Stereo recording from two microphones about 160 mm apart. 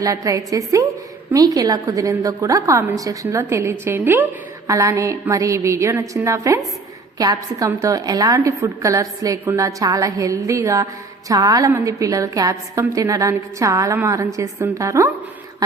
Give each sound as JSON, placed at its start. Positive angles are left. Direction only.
{"t": 0.0, "sound": "a woman's voice", "side_deg": -20}